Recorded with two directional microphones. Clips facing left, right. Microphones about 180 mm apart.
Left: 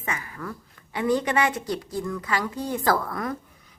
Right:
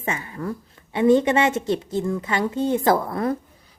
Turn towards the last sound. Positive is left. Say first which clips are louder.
# right 7 dB
turn(degrees=-30)  # may be behind; listen again after turning